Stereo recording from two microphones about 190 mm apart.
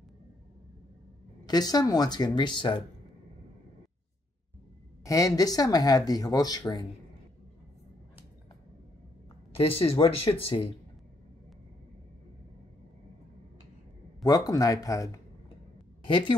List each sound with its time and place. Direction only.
1.4 s speech: 20° left (ahead or behind)
5.0 s speech: 15° left (ahead or behind)
9.6 s speech: 30° left (ahead or behind)
14.2 s speech: 20° left (ahead or behind)